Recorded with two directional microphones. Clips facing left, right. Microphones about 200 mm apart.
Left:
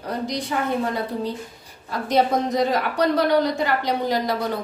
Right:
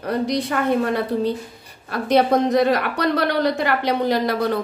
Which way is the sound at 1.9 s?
65° right (ahead or behind).